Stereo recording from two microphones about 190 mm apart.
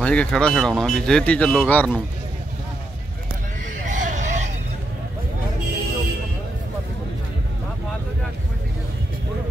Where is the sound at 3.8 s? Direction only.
40° right (ahead or behind).